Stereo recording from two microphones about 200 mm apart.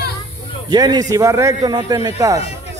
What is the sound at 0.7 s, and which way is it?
A man's voice, 20° right (ahead or behind).